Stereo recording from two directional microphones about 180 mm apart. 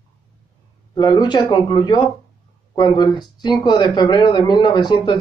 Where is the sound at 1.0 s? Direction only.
25° left (ahead or behind).